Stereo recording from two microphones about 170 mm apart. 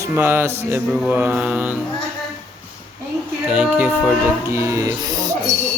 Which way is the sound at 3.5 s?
5° right (ahead or behind).